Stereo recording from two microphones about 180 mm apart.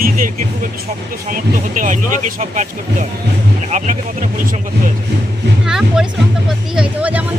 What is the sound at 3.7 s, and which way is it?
Speech, 40° right (ahead or behind).